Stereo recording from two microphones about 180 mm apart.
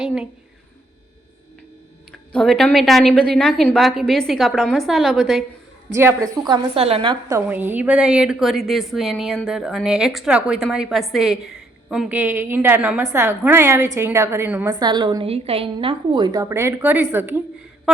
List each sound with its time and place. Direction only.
0.0 s a woman's voice: 5° right (ahead or behind)
2.3 s a woman's voice: centre (ahead or behind)
5.9 s a woman's voice: 15° right (ahead or behind)
6.7 s a woman's voice: 30° right (ahead or behind)
7.3 s a woman's voice: 10° right (ahead or behind)
14.7 s a woman's voice: 25° right (ahead or behind); by 18.0 s centre (ahead or behind)